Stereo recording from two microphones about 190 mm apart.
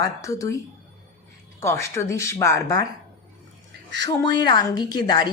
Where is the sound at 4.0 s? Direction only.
20° left (ahead or behind).